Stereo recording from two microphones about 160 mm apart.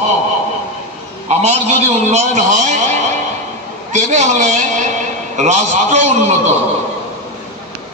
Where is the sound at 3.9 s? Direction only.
45° right (ahead or behind).